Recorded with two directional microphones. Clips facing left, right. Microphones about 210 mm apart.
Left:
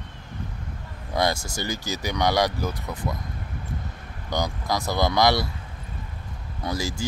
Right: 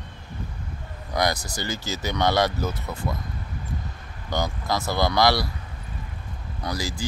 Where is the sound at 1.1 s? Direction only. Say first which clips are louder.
Left 1 dB; 25° left (ahead or behind).